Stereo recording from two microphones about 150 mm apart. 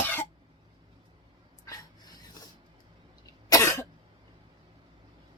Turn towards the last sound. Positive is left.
turn(degrees=20)  # may be behind; listen again after turning